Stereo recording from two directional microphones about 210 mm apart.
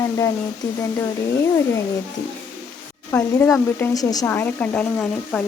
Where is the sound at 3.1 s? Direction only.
10° left (ahead or behind).